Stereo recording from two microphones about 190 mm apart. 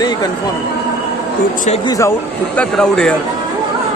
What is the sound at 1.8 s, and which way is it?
Speech, 20° left (ahead or behind).